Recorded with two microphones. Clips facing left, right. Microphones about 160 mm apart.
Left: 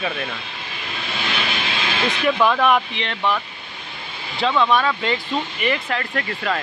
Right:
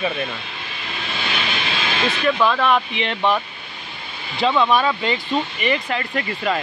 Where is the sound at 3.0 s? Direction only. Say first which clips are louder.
Right 3 dB; 20° right (ahead or behind).